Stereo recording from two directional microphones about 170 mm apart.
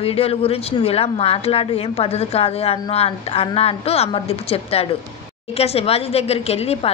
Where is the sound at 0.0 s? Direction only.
35° left (ahead or behind).